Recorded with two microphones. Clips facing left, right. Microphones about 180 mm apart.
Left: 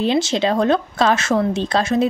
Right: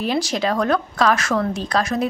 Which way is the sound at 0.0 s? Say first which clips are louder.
Left 4 dB; 25° left (ahead or behind).